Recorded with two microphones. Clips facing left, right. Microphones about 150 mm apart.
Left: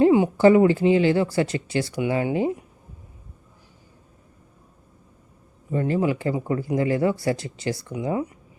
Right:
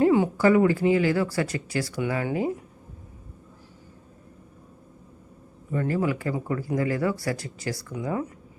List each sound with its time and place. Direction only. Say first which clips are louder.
0.0 s speech: left 4 dB; 20° left (ahead or behind)
5.7 s speech: left 3 dB; 20° left (ahead or behind)